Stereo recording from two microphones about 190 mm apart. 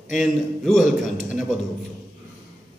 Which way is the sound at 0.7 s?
45° left (ahead or behind).